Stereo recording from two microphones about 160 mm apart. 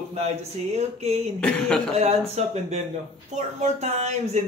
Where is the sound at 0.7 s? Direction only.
45° right (ahead or behind).